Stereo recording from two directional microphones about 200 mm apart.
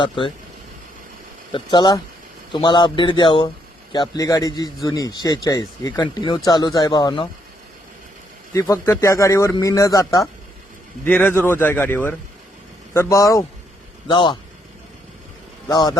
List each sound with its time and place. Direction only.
1.5 s a man's voice: 20° left (ahead or behind)
8.5 s a man's voice: 15° left (ahead or behind)
15.7 s a man's voice: 20° left (ahead or behind)